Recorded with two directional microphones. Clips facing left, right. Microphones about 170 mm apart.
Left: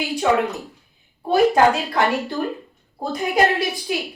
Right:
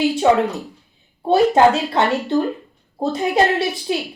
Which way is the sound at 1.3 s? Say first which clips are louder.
Right 2 dB; 25° right (ahead or behind).